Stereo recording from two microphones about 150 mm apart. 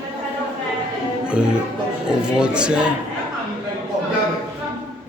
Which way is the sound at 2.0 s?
5° right (ahead or behind).